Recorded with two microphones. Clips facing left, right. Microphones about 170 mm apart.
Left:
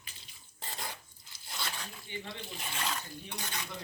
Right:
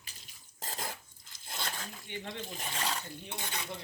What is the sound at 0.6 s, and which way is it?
Filing, 45° right (ahead or behind).